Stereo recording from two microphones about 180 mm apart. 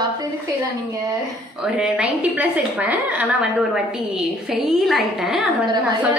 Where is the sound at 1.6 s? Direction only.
5° right (ahead or behind).